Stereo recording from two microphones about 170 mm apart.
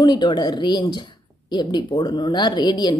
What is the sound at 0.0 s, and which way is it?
A woman's voice, 25° left (ahead or behind).